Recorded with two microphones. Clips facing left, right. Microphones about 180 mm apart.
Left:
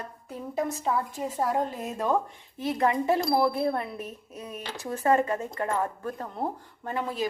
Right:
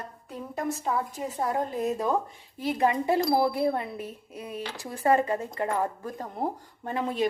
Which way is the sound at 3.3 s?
15° right (ahead or behind).